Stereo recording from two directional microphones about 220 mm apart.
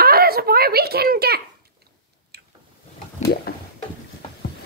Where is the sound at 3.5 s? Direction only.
45° left (ahead or behind).